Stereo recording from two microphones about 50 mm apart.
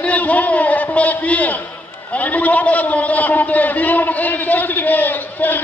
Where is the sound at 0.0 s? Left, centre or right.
Left.